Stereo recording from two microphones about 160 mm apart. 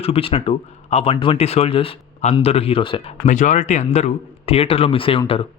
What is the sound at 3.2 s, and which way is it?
Speech, 50° left (ahead or behind).